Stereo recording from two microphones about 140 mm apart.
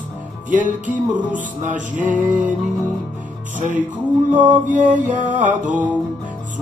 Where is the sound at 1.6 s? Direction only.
65° right (ahead or behind).